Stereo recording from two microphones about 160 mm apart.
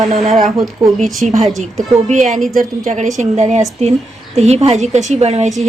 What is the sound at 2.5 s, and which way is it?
A woman's voice, 55° right (ahead or behind).